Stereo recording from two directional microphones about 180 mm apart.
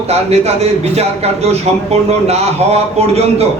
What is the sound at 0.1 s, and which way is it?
A man's voice, 35° right (ahead or behind).